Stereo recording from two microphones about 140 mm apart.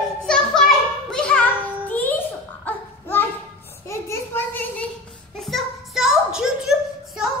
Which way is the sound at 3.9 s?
20° left (ahead or behind).